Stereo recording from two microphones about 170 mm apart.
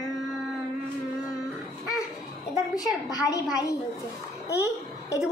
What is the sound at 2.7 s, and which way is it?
A woman's voice, 20° left (ahead or behind).